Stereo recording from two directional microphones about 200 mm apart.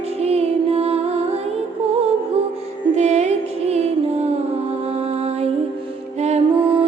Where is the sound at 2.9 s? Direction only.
35° right (ahead or behind).